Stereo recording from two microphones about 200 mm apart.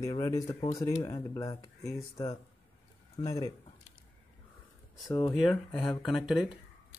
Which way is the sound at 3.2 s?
20° left (ahead or behind).